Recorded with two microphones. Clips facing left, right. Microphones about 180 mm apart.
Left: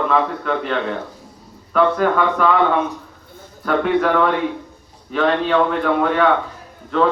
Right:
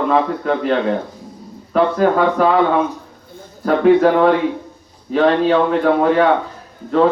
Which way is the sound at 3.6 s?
35° right (ahead or behind).